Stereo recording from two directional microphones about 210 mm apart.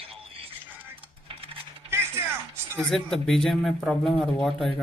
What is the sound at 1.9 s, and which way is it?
Music, 10° right (ahead or behind).